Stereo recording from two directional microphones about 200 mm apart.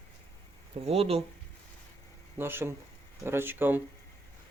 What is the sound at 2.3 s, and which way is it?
Speech, 10° right (ahead or behind).